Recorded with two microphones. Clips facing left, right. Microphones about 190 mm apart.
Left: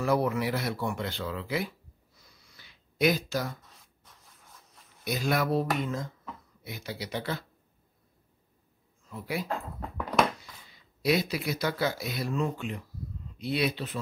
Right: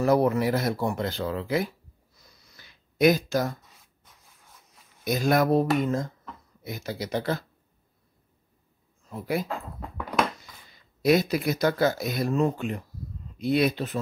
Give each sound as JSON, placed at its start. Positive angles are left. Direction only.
{"t": 0.0, "sound": "speech", "side_deg": -40}
{"t": 2.1, "sound": "a sound", "side_deg": -40}
{"t": 3.8, "sound": "rub", "side_deg": -5}
{"t": 5.0, "sound": "speech", "side_deg": -45}
{"t": 9.1, "sound": "speech", "side_deg": -45}
{"t": 10.7, "sound": "speech", "side_deg": -45}